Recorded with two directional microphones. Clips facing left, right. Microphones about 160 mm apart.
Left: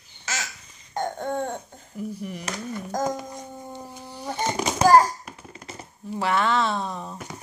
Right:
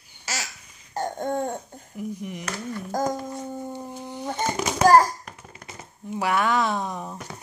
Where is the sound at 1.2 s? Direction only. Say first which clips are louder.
Right 1 dB; 15° right (ahead or behind).